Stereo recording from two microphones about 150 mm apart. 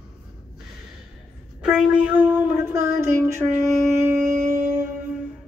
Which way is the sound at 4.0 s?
15° right (ahead or behind).